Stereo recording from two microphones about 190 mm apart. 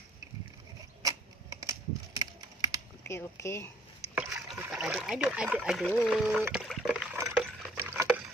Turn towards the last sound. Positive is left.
turn(degrees=-5)  # may be behind; listen again after turning